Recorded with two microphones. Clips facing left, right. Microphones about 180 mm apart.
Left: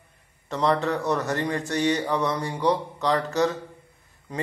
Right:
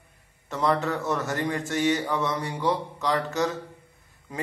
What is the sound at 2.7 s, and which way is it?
Speech, centre (ahead or behind).